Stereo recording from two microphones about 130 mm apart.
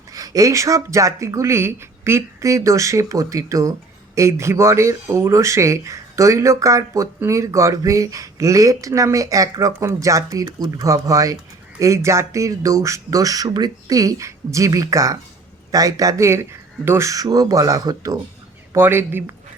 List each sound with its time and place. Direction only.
0.1 s speech: 25° right (ahead or behind)